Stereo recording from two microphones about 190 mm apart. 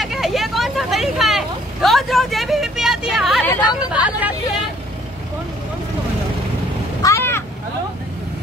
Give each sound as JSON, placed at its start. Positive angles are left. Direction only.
{"t": 0.0, "sound": "vehicle", "side_deg": 0}
{"t": 3.9, "sound": "hubbub", "side_deg": -5}
{"t": 7.0, "sound": "vehicle", "side_deg": 15}